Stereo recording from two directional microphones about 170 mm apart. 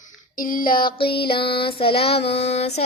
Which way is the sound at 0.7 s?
30° left (ahead or behind).